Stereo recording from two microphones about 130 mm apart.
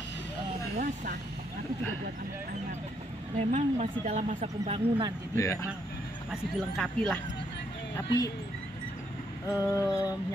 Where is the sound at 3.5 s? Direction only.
65° right (ahead or behind).